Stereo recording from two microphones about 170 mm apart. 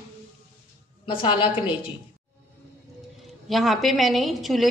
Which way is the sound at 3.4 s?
Centre (ahead or behind).